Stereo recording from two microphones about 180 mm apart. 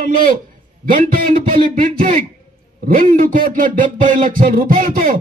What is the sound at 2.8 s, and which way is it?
A man's voice, 50° right (ahead or behind).